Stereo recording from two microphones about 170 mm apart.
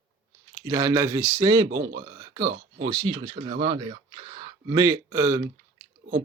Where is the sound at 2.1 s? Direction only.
20° right (ahead or behind).